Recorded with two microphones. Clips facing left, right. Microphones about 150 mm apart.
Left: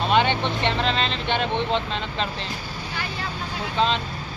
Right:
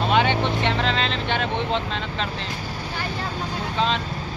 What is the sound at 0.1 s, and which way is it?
Speech, 5° right (ahead or behind).